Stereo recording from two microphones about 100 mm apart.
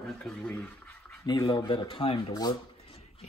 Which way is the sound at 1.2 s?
45° left (ahead or behind).